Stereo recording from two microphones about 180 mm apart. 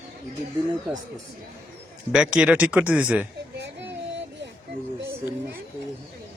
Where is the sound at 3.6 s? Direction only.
80° right.